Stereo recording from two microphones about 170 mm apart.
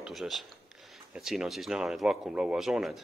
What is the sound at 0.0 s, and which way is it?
Speech, centre (ahead or behind).